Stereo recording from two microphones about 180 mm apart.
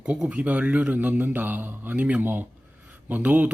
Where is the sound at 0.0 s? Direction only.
10° right (ahead or behind).